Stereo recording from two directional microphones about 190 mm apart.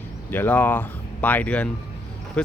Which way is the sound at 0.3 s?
10° left (ahead or behind).